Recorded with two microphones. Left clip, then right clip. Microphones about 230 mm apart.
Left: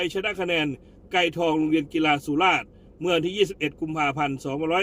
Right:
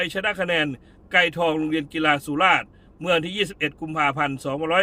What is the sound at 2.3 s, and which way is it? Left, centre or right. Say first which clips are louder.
A man's voice: right 2 dB; right.